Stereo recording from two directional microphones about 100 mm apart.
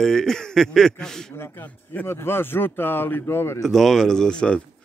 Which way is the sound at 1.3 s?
20° left (ahead or behind).